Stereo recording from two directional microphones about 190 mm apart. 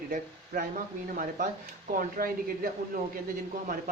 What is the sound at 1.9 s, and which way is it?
Speech, 45° right (ahead or behind).